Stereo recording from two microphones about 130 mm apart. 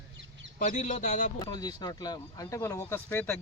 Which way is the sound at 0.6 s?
75° left (ahead or behind).